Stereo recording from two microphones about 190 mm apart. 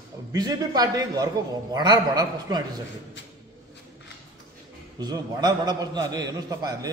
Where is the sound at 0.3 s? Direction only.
20° right (ahead or behind).